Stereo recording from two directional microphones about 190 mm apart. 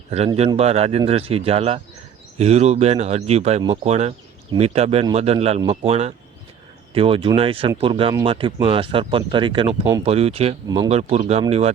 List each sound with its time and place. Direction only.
0.3 s speech: 35° right (ahead or behind)